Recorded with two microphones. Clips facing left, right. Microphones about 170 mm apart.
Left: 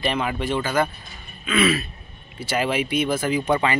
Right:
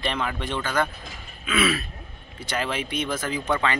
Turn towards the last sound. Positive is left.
turn(degrees=10)  # may be behind; listen again after turning